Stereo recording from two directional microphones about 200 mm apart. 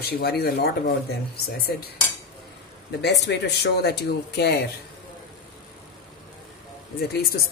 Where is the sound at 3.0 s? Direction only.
55° left (ahead or behind).